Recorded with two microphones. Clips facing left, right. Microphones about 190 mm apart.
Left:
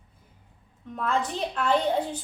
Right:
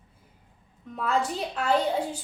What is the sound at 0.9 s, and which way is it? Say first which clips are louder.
A woman's voice: right 1 dB; 10° right (ahead or behind).